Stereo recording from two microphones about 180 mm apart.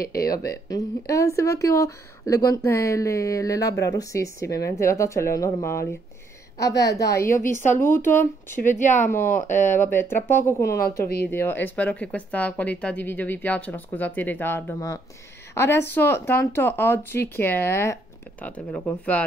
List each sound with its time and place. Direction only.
0.3 s a woman's voice: 20° left (ahead or behind)
8.2 s speech: 45° left (ahead or behind)
9.1 s speech: 15° left (ahead or behind)
9.5 s speech: 45° left (ahead or behind)
9.9 s speech: 10° left (ahead or behind)